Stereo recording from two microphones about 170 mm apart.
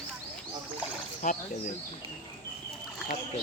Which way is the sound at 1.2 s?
45° left (ahead or behind).